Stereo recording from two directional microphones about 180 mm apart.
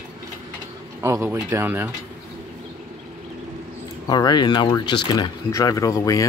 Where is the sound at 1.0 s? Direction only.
15° right (ahead or behind).